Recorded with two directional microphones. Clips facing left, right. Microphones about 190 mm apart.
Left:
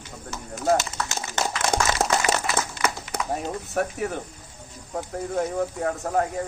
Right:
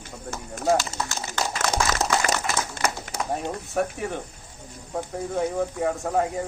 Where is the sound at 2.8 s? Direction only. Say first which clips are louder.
Even; 50° right (ahead or behind).